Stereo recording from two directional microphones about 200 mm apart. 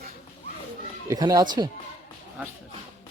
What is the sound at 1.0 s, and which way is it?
Speech, 20° right (ahead or behind).